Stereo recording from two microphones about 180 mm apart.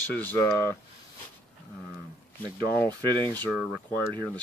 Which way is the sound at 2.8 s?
10° left (ahead or behind).